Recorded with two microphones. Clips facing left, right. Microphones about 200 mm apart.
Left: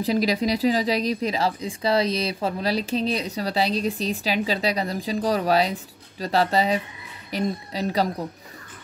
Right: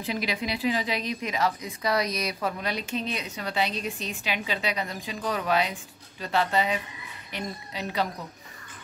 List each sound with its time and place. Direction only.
0.0 s speech: 40° left (ahead or behind)